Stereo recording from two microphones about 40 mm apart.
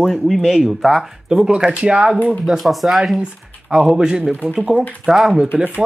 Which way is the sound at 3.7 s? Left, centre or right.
Centre.